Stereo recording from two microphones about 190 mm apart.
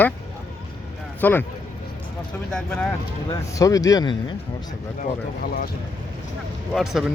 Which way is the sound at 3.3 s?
20° left (ahead or behind).